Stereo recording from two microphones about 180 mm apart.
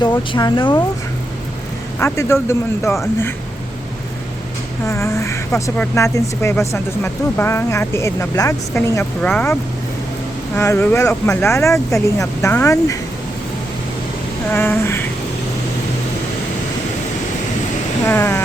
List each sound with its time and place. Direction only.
0.3 s speech: 25° left (ahead or behind)
2.0 s speech: 15° left (ahead or behind)
4.9 s speech: 15° left (ahead or behind)
10.6 s speech: 15° left (ahead or behind)
14.5 s speech: 10° left (ahead or behind)
18.0 s speech: 15° left (ahead or behind)